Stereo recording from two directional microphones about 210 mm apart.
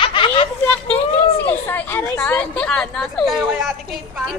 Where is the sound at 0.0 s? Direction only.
25° left (ahead or behind).